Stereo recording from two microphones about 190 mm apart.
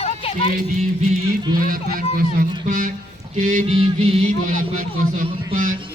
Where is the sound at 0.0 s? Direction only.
30° left (ahead or behind).